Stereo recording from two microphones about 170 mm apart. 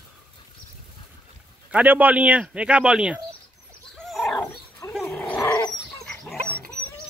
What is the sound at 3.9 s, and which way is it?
Wild animals, centre (ahead or behind).